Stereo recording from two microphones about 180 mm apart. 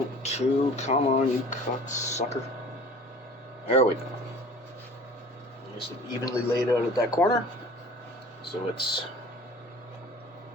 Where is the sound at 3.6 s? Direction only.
35° left (ahead or behind).